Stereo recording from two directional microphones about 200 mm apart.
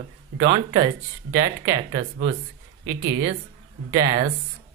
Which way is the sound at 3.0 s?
65° right (ahead or behind).